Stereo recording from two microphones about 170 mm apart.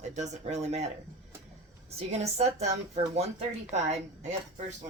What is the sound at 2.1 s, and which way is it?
A woman's voice, 40° right (ahead or behind).